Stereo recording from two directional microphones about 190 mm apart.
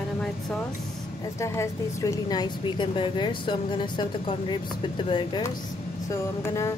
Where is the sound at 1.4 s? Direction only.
15° left (ahead or behind).